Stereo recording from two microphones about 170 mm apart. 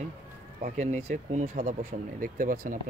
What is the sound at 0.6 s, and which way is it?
Speech, 45° right (ahead or behind).